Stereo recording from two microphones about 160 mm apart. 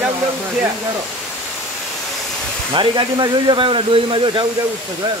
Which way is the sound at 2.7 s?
30° right (ahead or behind).